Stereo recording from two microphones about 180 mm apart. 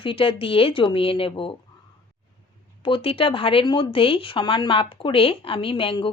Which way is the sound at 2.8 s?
30° left (ahead or behind).